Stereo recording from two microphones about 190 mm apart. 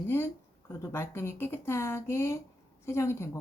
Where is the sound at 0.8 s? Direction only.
15° left (ahead or behind).